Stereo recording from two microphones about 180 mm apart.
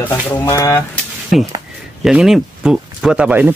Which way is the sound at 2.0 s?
5° right (ahead or behind).